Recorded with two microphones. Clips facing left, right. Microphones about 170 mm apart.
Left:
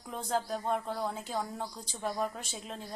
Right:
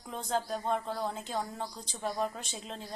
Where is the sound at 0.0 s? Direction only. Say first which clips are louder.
Even; 5° left (ahead or behind).